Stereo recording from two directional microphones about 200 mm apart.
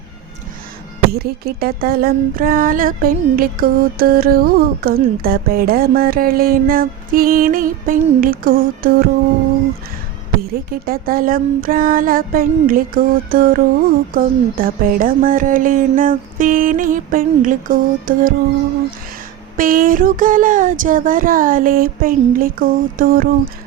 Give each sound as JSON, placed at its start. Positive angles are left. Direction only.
{"t": 1.1, "sound": "speech", "side_deg": -50}
{"t": 10.5, "sound": "speech", "side_deg": -45}
{"t": 19.5, "sound": "speech", "side_deg": -45}